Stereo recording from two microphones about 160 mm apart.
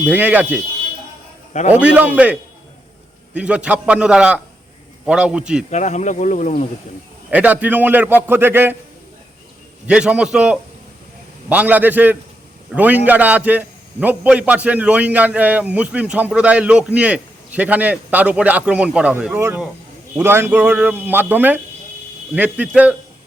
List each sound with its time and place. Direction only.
0.0 s a man's voice: 10° right (ahead or behind)
1.7 s a man's voice: 10° right (ahead or behind)
5.7 s speech: 45° left (ahead or behind)
7.3 s a man's voice: 10° right (ahead or behind)
9.8 s a man's voice: 5° right (ahead or behind)